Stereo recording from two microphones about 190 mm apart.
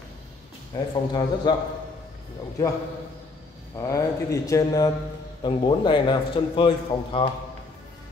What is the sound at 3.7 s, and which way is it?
Mantra, 15° left (ahead or behind).